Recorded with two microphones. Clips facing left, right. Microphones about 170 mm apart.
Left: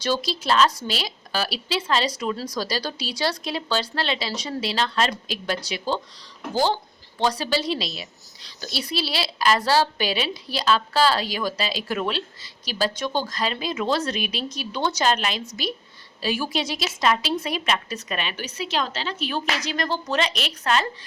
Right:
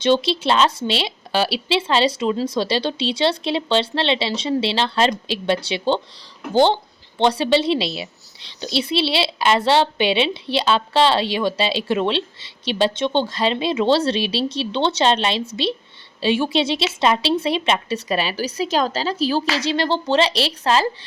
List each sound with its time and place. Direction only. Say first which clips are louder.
0.0 s a woman's voice: right 8 dB; 25° right (ahead or behind)